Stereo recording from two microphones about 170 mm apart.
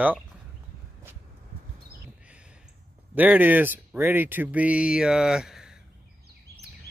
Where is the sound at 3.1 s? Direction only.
10° right (ahead or behind).